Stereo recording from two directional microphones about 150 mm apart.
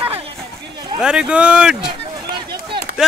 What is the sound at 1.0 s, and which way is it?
Speech, 5° right (ahead or behind).